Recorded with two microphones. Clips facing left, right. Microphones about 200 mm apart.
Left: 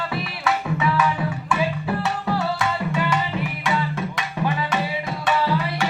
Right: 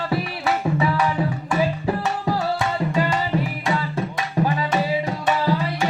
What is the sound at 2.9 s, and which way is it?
Tabla, 35° right (ahead or behind).